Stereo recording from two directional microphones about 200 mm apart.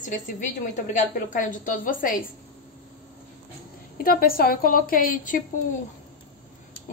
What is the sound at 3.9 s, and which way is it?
A woman's voice, 50° left (ahead or behind).